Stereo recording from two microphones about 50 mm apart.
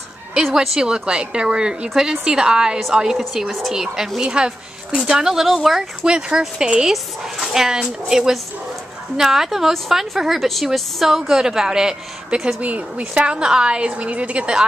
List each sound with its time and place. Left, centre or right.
0.7 s a woman's voice: centre
3.2 s a woman's voice: centre
6.0 s a woman's voice: centre
6.9 s a woman's voice: centre
12.5 s a woman's voice: right